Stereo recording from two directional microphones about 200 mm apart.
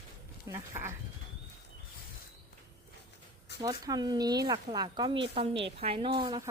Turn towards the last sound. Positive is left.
turn(degrees=-20)  # may be behind; listen again after turning